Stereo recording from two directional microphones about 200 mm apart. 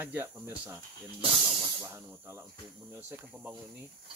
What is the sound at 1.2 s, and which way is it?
Snake, 25° right (ahead or behind).